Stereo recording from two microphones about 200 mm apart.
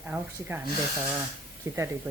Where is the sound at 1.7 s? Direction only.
15° right (ahead or behind).